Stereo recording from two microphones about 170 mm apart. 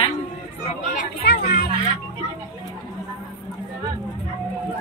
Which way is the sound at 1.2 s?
65° left (ahead or behind).